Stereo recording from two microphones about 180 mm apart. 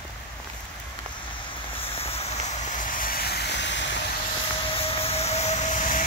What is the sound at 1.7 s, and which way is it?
Vehicle, 35° left (ahead or behind).